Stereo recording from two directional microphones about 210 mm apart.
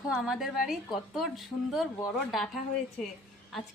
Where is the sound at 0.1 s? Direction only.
Centre (ahead or behind).